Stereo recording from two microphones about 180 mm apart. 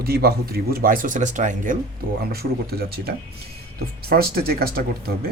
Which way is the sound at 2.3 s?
60° right (ahead or behind).